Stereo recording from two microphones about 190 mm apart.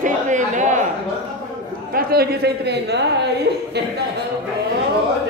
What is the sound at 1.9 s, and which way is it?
A man's voice, 55° right (ahead or behind).